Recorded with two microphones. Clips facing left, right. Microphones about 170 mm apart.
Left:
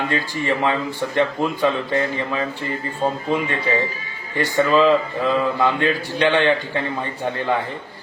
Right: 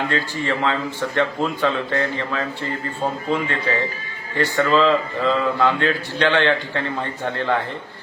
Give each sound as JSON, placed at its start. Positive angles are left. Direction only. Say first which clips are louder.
{"t": 0.1, "sound": "speech", "louder": "left 1 dB", "side_deg": 15}